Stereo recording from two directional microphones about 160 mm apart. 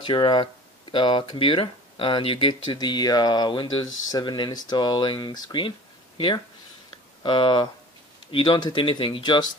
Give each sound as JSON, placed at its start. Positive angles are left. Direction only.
{"t": 0.0, "sound": "speech", "side_deg": 30}